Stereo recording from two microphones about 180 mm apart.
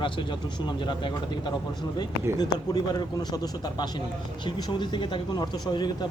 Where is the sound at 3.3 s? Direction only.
20° left (ahead or behind).